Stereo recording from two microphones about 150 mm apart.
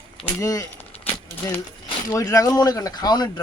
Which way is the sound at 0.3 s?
20° left (ahead or behind).